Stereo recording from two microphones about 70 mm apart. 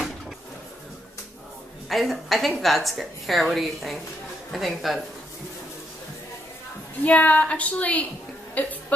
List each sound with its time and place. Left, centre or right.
1.9 s a woman's voice: centre
7.1 s a woman's voice: left